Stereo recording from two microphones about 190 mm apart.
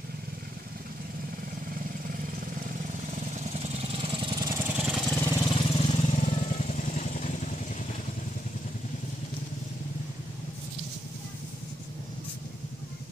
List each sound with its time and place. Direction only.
3.3 s vehicle: 35° right (ahead or behind); by 5.1 s 5° right (ahead or behind)
5.1 s lawn mower: 15° left (ahead or behind)
5.5 s vehicle: 30° left (ahead or behind)